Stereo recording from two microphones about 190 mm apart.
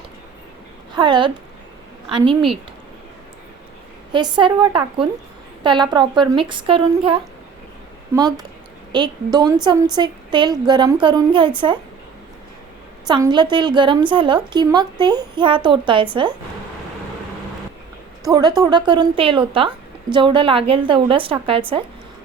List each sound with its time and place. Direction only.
0.9 s a woman's voice: 25° right (ahead or behind)
4.1 s a woman's voice: 25° right (ahead or behind)
13.1 s a woman's voice: 20° right (ahead or behind)
18.3 s a woman's voice: 20° right (ahead or behind)